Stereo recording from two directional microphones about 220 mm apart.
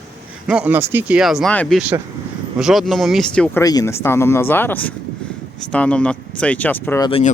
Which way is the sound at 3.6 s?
15° left (ahead or behind).